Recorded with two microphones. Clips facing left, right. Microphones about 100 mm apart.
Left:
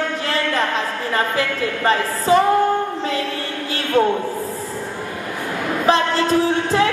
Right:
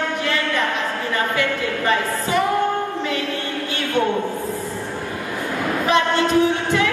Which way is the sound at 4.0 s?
35° left (ahead or behind).